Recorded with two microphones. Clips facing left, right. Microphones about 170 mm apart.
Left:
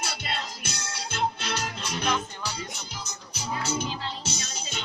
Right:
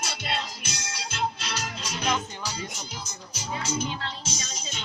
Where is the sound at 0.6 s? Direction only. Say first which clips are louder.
Left 1 dB; 55° left (ahead or behind).